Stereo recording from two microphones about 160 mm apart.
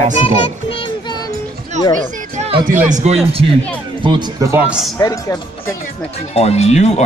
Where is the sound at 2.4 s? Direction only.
40° right (ahead or behind).